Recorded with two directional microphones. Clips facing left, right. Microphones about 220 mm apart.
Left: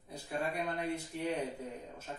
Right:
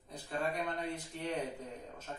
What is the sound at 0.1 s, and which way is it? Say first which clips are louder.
A man's voice: even; 10° left (ahead or behind).